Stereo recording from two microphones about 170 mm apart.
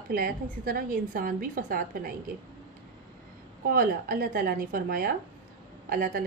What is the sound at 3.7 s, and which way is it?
A woman's voice, 55° right (ahead or behind).